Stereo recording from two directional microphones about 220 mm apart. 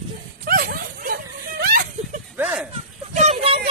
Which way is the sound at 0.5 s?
40° right (ahead or behind).